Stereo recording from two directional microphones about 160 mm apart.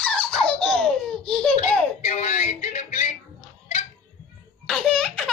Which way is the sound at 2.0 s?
45° left (ahead or behind).